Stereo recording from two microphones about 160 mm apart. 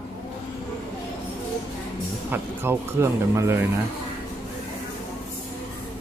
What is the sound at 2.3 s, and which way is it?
Speech, 15° right (ahead or behind).